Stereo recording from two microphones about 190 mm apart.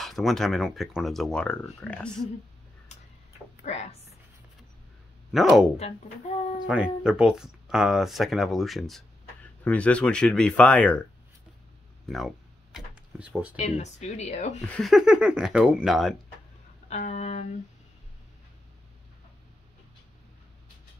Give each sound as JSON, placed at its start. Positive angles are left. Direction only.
{"t": 0.0, "sound": "speech", "side_deg": 0}
{"t": 3.6, "sound": "speech", "side_deg": 35}
{"t": 5.3, "sound": "speech", "side_deg": 0}
{"t": 5.8, "sound": "speech", "side_deg": 35}
{"t": 6.6, "sound": "speech", "side_deg": -5}
{"t": 12.7, "sound": "a sound", "side_deg": -5}
{"t": 13.6, "sound": "speech", "side_deg": 35}
{"t": 14.7, "sound": "speech", "side_deg": 0}
{"t": 16.9, "sound": "speech", "side_deg": 35}